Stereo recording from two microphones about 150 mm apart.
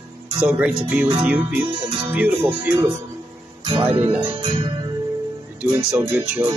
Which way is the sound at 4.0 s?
15° right (ahead or behind).